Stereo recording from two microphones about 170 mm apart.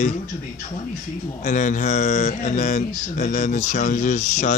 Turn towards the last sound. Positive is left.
turn(degrees=45)  # may be behind; listen again after turning